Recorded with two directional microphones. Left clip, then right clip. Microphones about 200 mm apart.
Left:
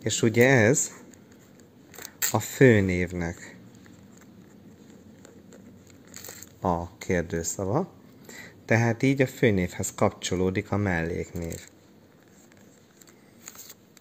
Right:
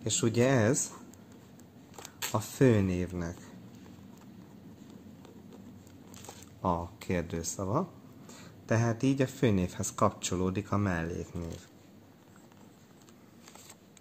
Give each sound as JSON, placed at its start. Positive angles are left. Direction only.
{"t": 0.0, "sound": "speech", "side_deg": 30}
{"t": 2.3, "sound": "speech", "side_deg": 30}
{"t": 6.6, "sound": "speech", "side_deg": 30}